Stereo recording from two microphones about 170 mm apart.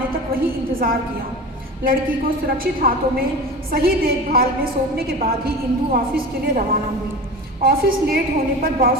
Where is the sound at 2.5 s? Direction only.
60° right (ahead or behind).